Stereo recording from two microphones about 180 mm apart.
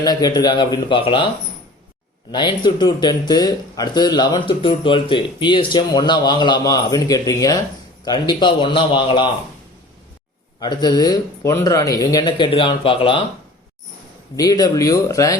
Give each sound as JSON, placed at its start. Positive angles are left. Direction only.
{"t": 0.0, "sound": "speech", "side_deg": 20}
{"t": 2.3, "sound": "speech", "side_deg": 25}
{"t": 10.6, "sound": "speech", "side_deg": 25}
{"t": 14.3, "sound": "speech", "side_deg": 20}